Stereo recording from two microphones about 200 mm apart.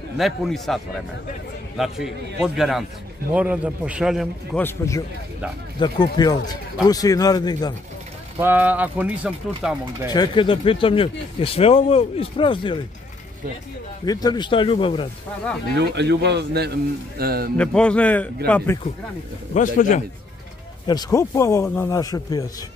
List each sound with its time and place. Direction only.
0.2 s a man's voice: centre (ahead or behind)
1.8 s a man's voice: centre (ahead or behind)
4.6 s speech: 15° left (ahead or behind)
8.4 s a man's voice: 10° right (ahead or behind)
10.0 s speech: 20° left (ahead or behind)
14.0 s speech: 20° left (ahead or behind)
15.7 s a man's voice: 60° right (ahead or behind)
17.6 s speech: 5° left (ahead or behind)
19.5 s speech: 40° left (ahead or behind)
20.8 s speech: 20° left (ahead or behind)